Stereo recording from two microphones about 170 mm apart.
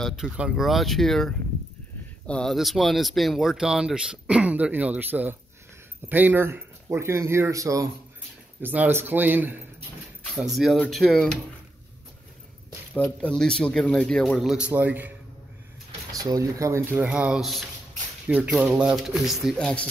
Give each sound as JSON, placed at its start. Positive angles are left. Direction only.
{"t": 0.0, "sound": "speech", "side_deg": 0}
{"t": 12.9, "sound": "speech", "side_deg": 5}
{"t": 16.1, "sound": "speech", "side_deg": -20}